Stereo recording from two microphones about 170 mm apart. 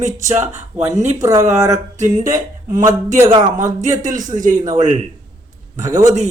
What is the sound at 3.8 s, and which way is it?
A man's voice, 45° right (ahead or behind).